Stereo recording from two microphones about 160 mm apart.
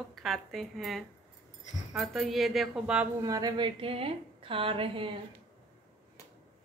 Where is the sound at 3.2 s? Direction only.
25° right (ahead or behind).